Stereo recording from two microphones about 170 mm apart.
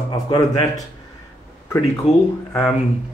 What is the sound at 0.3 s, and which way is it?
Speech, 25° left (ahead or behind).